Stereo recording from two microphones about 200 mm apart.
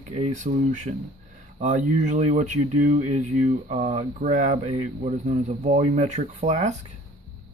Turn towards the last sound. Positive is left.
turn(degrees=-35)  # may be behind; listen again after turning